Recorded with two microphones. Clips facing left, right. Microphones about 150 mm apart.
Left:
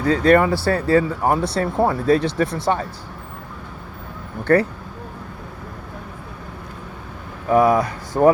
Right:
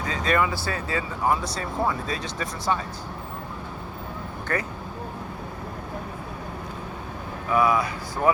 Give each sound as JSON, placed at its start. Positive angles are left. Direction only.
{"t": 0.0, "sound": "speech", "side_deg": 60}
{"t": 7.5, "sound": "speech", "side_deg": 45}